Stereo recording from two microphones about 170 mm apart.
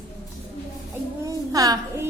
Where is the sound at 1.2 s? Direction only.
20° right (ahead or behind).